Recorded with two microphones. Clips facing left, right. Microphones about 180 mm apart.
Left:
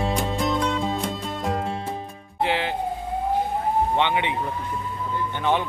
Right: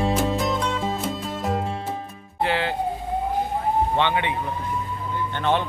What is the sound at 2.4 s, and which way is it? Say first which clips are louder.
Music: even; 15° left (ahead or behind).